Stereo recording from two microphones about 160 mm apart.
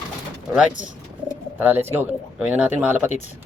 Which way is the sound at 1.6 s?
15° right (ahead or behind).